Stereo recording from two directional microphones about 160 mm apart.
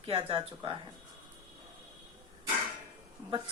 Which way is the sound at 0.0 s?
35° right (ahead or behind).